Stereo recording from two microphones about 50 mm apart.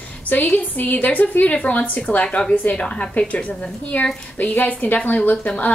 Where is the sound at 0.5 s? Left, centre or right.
Left.